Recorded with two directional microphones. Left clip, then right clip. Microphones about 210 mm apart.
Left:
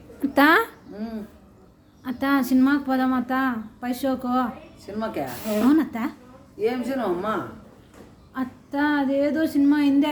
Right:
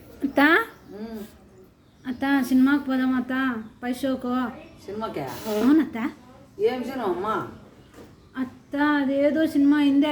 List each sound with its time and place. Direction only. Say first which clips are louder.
0.3 s speech: left 2 dB; 25° left (ahead or behind)
2.0 s speech: left 1 dB; 25° left (ahead or behind)
4.9 s speech: left 2 dB; 10° left (ahead or behind)
5.6 s speech: even; 25° left (ahead or behind)
6.6 s speech: even; 10° left (ahead or behind)